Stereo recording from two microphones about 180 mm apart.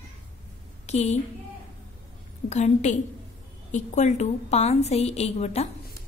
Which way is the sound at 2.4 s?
40° left (ahead or behind).